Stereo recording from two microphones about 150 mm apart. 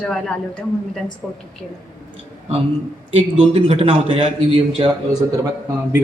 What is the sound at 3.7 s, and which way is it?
A man's voice, 40° right (ahead or behind).